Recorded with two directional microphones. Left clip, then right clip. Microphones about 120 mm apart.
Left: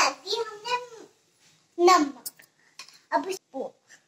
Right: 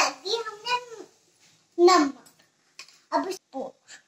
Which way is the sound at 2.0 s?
25° right (ahead or behind).